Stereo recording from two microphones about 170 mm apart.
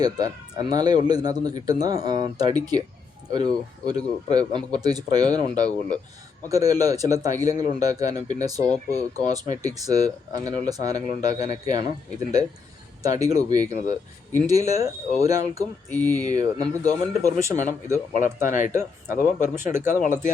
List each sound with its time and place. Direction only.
0.0 s speech: 25° right (ahead or behind)
13.0 s speech: 20° right (ahead or behind)
15.9 s speech: 10° left (ahead or behind)
16.1 s speech: 20° right (ahead or behind)
17.2 s speech: 45° left (ahead or behind)